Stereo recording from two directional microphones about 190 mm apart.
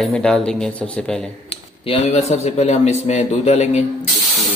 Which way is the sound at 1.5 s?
30° left (ahead or behind).